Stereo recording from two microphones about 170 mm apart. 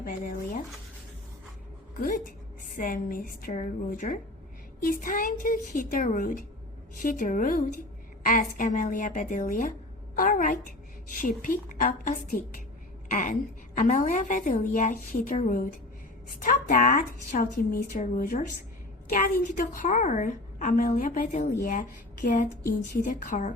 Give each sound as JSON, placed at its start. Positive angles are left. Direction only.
{"t": 0.0, "sound": "a woman's voice", "side_deg": 50}
{"t": 2.0, "sound": "a woman's voice", "side_deg": 50}
{"t": 16.4, "sound": "a woman's voice", "side_deg": 55}